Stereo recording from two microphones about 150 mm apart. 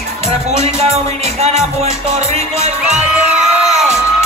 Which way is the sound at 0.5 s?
45° right (ahead or behind).